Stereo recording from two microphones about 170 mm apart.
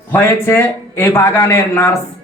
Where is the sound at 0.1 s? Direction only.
15° left (ahead or behind).